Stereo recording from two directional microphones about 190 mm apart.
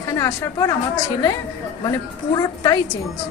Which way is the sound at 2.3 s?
20° left (ahead or behind).